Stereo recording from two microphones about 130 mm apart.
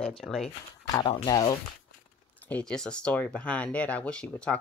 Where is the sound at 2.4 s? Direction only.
10° left (ahead or behind).